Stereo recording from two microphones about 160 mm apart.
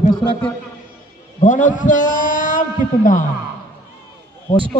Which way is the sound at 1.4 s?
50° left (ahead or behind).